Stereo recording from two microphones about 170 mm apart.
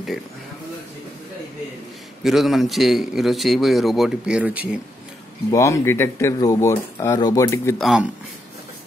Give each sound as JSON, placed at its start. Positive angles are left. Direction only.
{"t": 2.2, "sound": "a man's voice", "side_deg": 0}
{"t": 5.5, "sound": "speech", "side_deg": 15}
{"t": 7.8, "sound": "a man's voice", "side_deg": -5}